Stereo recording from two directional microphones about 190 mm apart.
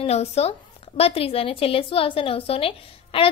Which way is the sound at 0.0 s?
35° left (ahead or behind).